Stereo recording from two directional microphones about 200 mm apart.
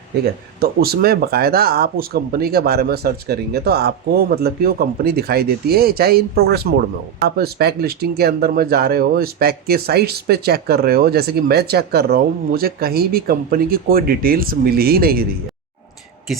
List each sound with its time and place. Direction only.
0.6 s speech: 50° right (ahead or behind)